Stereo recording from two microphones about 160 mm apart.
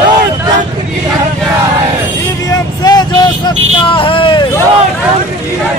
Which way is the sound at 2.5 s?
25° left (ahead or behind).